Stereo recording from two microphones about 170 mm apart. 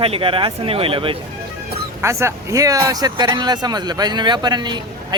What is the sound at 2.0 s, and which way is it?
Speech, 15° right (ahead or behind).